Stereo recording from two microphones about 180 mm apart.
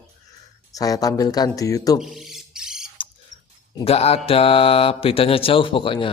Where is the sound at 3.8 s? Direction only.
35° left (ahead or behind).